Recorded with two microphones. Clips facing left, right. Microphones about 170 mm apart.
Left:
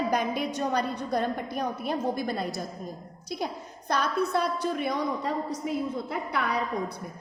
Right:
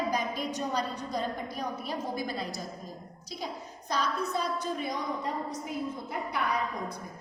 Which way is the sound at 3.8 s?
60° left (ahead or behind).